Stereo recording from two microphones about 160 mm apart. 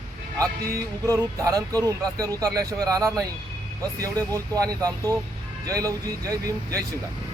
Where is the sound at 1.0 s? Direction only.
20° right (ahead or behind).